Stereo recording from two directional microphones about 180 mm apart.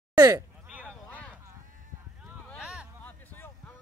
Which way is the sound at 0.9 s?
5° left (ahead or behind).